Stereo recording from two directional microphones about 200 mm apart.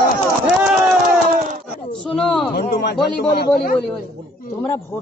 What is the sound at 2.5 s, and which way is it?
A man's voice, 60° left (ahead or behind).